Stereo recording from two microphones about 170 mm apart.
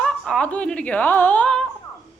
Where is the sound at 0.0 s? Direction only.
5° left (ahead or behind).